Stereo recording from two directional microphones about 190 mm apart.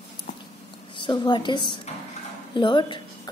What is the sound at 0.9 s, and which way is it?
A woman's voice, 25° left (ahead or behind).